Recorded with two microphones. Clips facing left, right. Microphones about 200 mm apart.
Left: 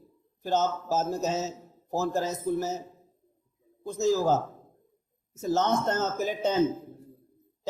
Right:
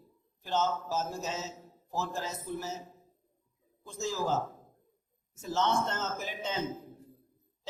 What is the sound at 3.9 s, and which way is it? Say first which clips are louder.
Speech: left 8 dB; 40° left (ahead or behind).